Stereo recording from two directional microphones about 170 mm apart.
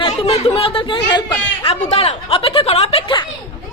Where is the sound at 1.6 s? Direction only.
35° left (ahead or behind).